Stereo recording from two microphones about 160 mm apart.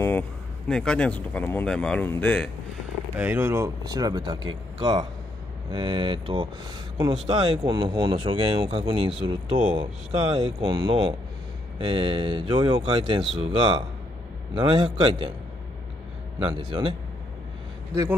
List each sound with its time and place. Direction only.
0.7 s speech: 5° left (ahead or behind)
3.2 s speech: 10° right (ahead or behind); by 15.3 s 35° right (ahead or behind)
16.3 s speech: 30° right (ahead or behind)